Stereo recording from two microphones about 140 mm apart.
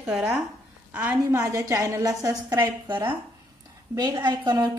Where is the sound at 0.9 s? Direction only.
10° right (ahead or behind).